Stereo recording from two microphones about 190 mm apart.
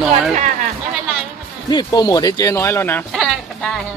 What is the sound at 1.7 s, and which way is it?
Speech, 20° left (ahead or behind).